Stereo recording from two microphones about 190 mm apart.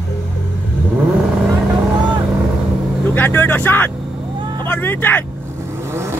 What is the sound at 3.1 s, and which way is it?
Speech, 10° left (ahead or behind).